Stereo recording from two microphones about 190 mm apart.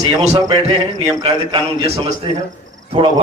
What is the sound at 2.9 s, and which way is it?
Speech, 30° right (ahead or behind).